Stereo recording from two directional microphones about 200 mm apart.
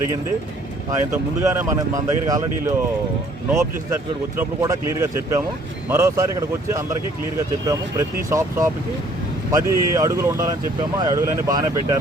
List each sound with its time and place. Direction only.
0.9 s speech: 15° right (ahead or behind)
4.4 s speech: 15° right (ahead or behind)